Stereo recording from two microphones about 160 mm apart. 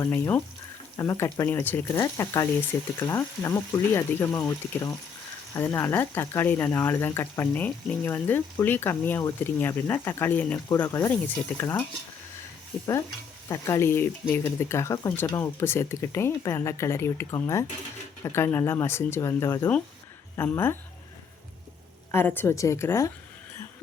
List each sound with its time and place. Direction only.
0.0 s speech: 10° left (ahead or behind)
13.5 s speech: 20° left (ahead or behind)
22.1 s speech: 15° left (ahead or behind)